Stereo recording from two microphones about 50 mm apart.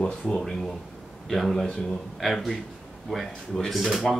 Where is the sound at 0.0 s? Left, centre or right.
Centre.